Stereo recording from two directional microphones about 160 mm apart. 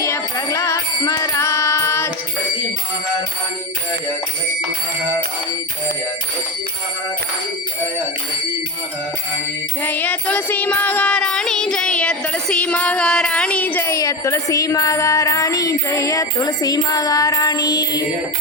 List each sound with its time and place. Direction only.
0.0 s music: 20° left (ahead or behind)
9.8 s music: 10° left (ahead or behind)